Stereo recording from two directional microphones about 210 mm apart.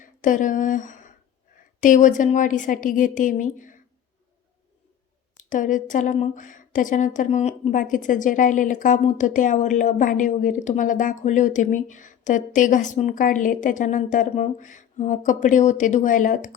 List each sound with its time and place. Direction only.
0.0 s a woman's voice: 40° left (ahead or behind)
5.4 s a woman's voice: 40° left (ahead or behind)